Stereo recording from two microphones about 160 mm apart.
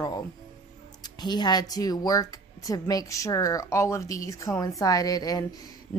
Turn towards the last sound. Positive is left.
turn(degrees=25)  # may be behind; listen again after turning